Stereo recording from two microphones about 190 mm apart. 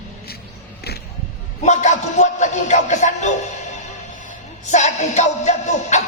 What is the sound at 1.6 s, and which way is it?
A man's voice, 40° left (ahead or behind).